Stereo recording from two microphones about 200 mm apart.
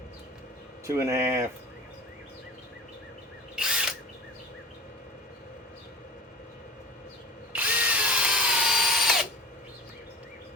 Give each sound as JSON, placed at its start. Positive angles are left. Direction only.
{"t": 0.9, "sound": "speech", "side_deg": -15}
{"t": 3.5, "sound": "ratchet", "side_deg": -5}
{"t": 7.5, "sound": "drill", "side_deg": -5}